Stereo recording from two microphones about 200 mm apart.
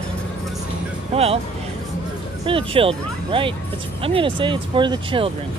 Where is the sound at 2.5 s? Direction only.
25° right (ahead or behind).